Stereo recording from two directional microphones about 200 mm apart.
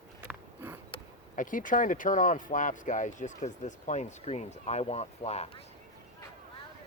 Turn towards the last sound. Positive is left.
turn(degrees=30)  # may be behind; listen again after turning